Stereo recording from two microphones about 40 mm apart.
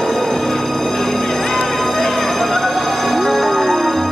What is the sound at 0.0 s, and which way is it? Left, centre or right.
Music, centre.